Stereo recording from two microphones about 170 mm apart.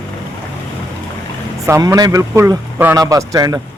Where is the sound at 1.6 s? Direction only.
20° right (ahead or behind).